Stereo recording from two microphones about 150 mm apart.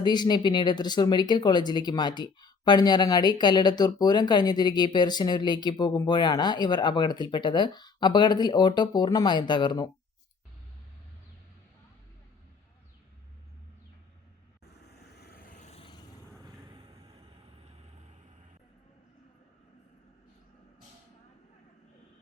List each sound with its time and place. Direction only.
0.0 s speech: 30° left (ahead or behind)
15.0 s vehicle: 90° left
15.6 s a sound: 45° left (ahead or behind)